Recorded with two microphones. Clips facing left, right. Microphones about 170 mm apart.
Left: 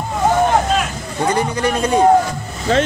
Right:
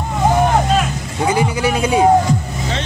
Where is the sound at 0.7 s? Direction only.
5° right (ahead or behind).